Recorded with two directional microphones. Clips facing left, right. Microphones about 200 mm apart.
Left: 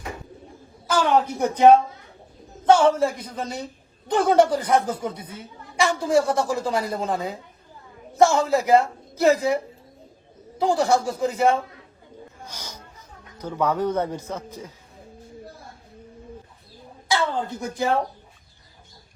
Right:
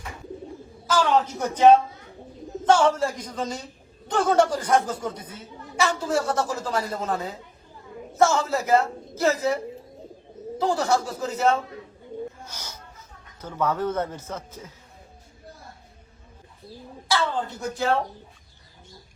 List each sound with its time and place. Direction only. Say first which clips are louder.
1.1 s a woman's voice: left 2 dB; 10° left (ahead or behind)
10.6 s a woman's voice: left 3 dB; 15° left (ahead or behind)
13.4 s a woman's voice: left 2 dB; 15° left (ahead or behind)
17.1 s speech: left 1 dB; 15° left (ahead or behind)